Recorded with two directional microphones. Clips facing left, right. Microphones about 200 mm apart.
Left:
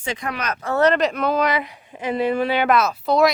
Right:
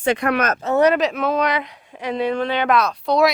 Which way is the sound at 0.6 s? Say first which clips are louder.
Right 1 dB; 20° right (ahead or behind).